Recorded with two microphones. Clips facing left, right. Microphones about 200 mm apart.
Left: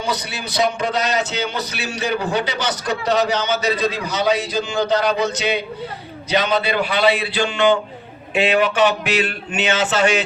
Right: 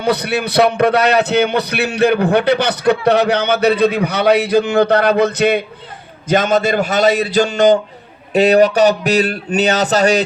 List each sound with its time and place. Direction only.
0.0 s a man's voice: 60° right (ahead or behind); by 10.2 s 40° right (ahead or behind)